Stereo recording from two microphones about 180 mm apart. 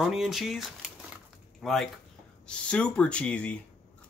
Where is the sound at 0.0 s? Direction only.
Centre (ahead or behind).